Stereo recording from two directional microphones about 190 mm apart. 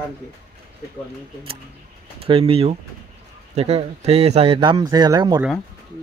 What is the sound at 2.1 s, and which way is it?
Speech, 30° right (ahead or behind).